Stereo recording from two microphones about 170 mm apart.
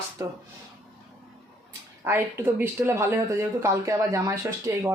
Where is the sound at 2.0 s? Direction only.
15° right (ahead or behind).